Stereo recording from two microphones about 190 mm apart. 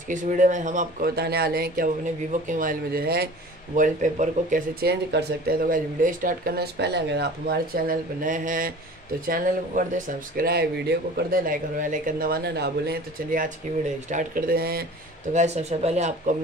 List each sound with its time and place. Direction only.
0.1 s speech: 40° right (ahead or behind)
3.7 s speech: 40° right (ahead or behind)
15.3 s speech: 35° right (ahead or behind)